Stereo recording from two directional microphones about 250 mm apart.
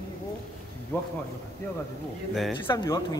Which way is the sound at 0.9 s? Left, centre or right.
Centre.